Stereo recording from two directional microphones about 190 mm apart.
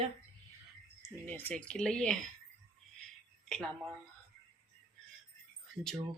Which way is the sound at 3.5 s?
5° left (ahead or behind).